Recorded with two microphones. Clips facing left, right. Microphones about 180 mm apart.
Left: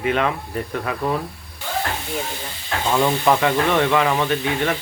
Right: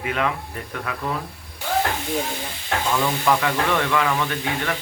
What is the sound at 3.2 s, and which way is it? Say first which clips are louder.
Speech: left 3 dB; 25° left (ahead or behind).